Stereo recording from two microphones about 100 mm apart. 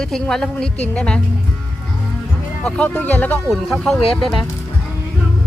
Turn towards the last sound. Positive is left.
turn(degrees=0)  # may be behind; listen again after turning